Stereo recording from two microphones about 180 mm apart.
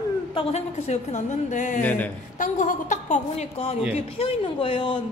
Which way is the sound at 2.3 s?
45° left (ahead or behind).